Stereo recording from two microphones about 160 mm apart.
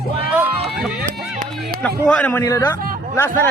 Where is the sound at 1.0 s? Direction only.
65° right (ahead or behind).